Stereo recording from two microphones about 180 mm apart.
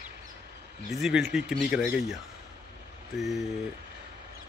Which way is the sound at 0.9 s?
Centre (ahead or behind).